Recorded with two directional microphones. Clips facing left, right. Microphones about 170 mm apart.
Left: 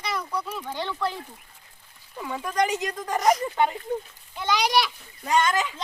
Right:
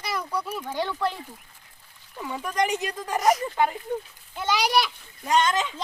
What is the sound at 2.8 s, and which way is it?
A child's voice, 10° right (ahead or behind).